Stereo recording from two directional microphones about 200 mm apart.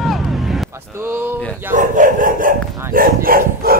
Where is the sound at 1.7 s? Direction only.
40° right (ahead or behind).